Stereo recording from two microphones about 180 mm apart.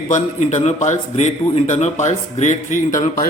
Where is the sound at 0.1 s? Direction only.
40° left (ahead or behind).